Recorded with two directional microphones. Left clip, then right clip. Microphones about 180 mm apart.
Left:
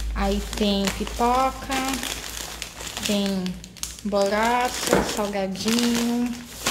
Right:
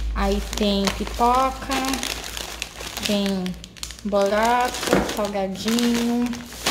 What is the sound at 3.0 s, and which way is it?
Speech, 5° right (ahead or behind).